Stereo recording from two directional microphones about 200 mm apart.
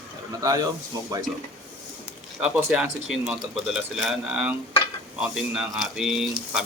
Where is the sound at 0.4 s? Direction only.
20° right (ahead or behind).